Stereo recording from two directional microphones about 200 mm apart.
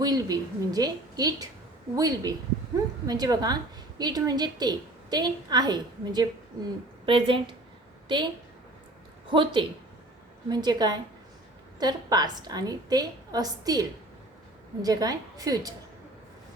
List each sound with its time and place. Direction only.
0.0 s a woman's voice: 20° right (ahead or behind)
9.3 s a woman's voice: 25° right (ahead or behind)